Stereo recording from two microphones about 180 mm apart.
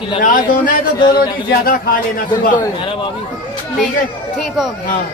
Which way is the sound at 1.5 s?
55° left (ahead or behind).